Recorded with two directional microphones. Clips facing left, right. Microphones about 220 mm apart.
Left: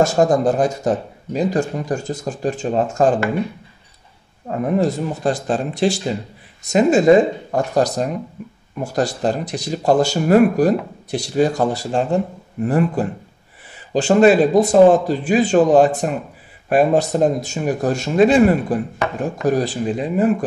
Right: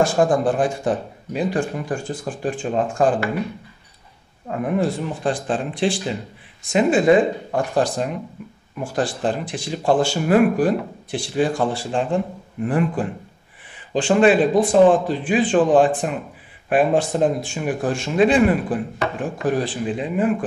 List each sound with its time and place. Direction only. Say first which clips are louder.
0.0 s speech: left 2 dB; 40° left (ahead or behind)
4.5 s speech: left 3 dB; 40° left (ahead or behind)